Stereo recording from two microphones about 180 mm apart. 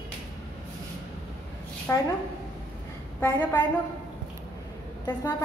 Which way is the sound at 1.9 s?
10° left (ahead or behind).